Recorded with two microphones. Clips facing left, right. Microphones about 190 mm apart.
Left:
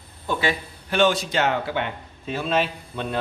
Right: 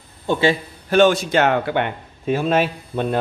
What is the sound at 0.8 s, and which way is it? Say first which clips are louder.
A man's voice: right 6 dB; 45° right (ahead or behind).